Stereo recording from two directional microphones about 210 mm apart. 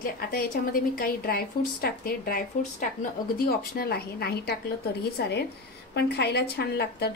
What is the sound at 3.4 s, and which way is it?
A woman's voice, 45° left (ahead or behind).